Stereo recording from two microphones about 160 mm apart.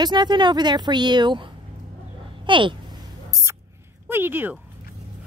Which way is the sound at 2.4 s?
30° right (ahead or behind).